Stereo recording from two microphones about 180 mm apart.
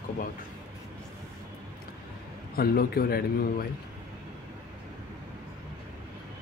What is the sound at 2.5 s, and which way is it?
Speech, 55° left (ahead or behind).